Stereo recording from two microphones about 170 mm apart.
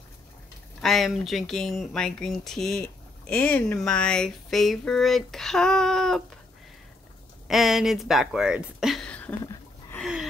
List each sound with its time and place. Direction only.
0.7 s speech: centre (ahead or behind)
7.4 s speech: centre (ahead or behind)
9.4 s a sound: 20° left (ahead or behind)